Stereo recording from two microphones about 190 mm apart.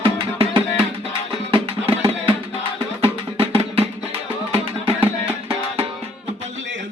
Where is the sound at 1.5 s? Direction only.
30° right (ahead or behind).